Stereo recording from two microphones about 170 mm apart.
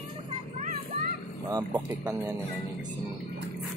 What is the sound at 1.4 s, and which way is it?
Speech, 20° right (ahead or behind).